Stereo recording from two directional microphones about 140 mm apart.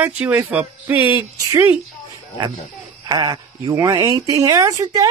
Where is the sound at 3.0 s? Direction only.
30° right (ahead or behind).